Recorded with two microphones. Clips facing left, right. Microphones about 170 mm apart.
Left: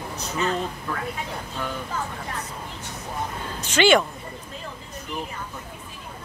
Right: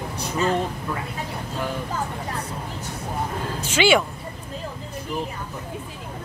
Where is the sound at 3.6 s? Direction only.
10° right (ahead or behind).